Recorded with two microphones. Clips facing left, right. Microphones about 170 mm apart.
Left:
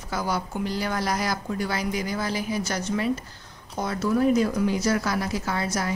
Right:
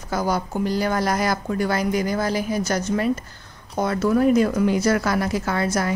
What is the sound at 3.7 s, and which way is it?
A woman's voice, 60° right (ahead or behind).